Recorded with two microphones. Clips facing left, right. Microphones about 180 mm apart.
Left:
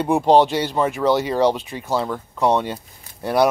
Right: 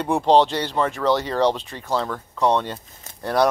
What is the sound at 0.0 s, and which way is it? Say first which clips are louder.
Speech: left 2 dB; 10° left (ahead or behind).